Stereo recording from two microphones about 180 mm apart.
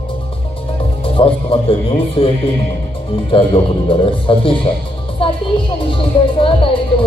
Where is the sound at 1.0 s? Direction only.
30° left (ahead or behind).